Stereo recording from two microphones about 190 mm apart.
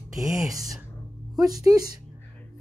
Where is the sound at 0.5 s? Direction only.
20° right (ahead or behind).